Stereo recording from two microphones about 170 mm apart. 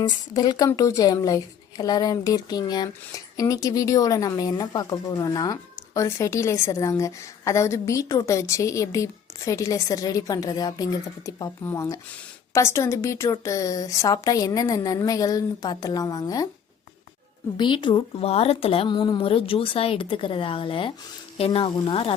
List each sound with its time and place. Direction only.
0.3 s a woman's voice: 25° left (ahead or behind)
17.6 s a woman's voice: 30° left (ahead or behind)